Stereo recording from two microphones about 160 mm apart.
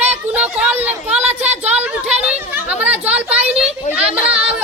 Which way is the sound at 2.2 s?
10° right (ahead or behind).